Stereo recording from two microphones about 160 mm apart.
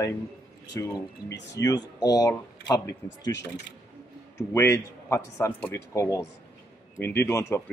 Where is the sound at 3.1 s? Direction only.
90° left.